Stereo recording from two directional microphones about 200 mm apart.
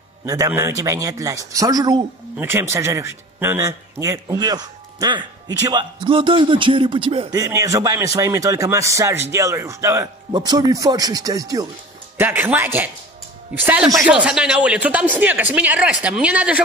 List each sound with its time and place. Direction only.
0.2 s a man's voice: 15° right (ahead or behind)